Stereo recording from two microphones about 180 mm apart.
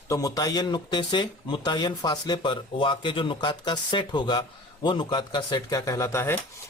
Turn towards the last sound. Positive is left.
turn(degrees=15)  # may be behind; listen again after turning